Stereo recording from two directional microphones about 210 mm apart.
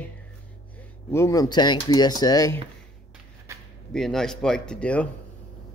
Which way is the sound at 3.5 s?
15° right (ahead or behind).